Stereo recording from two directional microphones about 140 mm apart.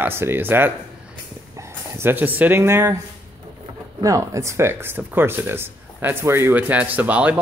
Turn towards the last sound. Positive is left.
turn(degrees=-10)  # may be behind; listen again after turning